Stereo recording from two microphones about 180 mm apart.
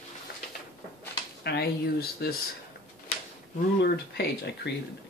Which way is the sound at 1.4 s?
65° left (ahead or behind).